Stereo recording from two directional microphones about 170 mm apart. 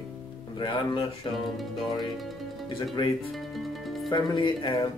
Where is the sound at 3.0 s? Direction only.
25° left (ahead or behind).